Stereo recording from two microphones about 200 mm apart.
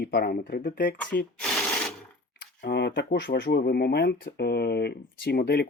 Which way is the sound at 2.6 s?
55° left (ahead or behind).